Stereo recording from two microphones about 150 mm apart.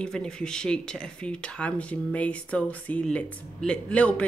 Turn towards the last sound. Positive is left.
turn(degrees=10)  # may be behind; listen again after turning